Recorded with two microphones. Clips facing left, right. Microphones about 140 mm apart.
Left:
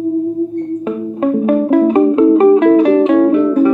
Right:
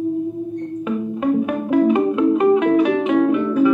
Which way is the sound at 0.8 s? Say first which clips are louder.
Left 1 dB; 35° left (ahead or behind).